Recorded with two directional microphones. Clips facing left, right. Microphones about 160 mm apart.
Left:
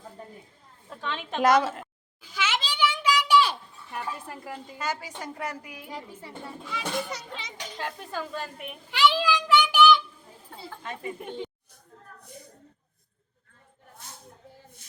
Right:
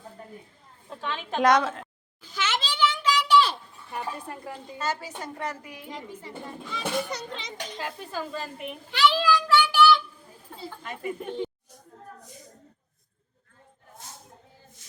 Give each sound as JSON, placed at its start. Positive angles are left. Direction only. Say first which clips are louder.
{"t": 1.1, "sound": "a sound", "louder": "even", "side_deg": 0}
{"t": 3.9, "sound": "a woman's voice", "louder": "right 1 dB", "side_deg": 5}
{"t": 8.9, "sound": "a child's voice", "louder": "right 1 dB", "side_deg": 10}